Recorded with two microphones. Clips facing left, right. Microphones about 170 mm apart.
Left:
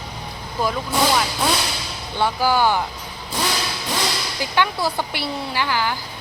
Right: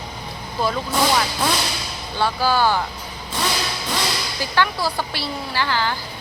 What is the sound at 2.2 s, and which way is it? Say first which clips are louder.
Speech: left 1 dB; 15° left (ahead or behind).